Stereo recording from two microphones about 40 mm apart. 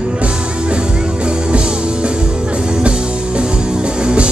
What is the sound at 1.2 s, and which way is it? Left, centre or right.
Music, right.